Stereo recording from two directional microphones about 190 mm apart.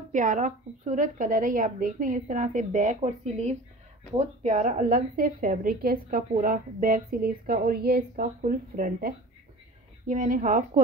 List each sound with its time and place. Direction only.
0.1 s a woman's voice: 40° right (ahead or behind)